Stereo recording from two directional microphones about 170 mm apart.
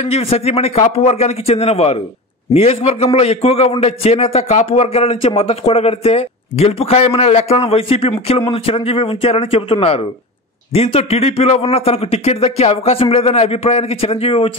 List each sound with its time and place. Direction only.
0.0 s speech: 35° left (ahead or behind)